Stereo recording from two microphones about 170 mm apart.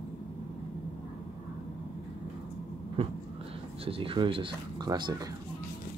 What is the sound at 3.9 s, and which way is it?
Speech, 30° right (ahead or behind).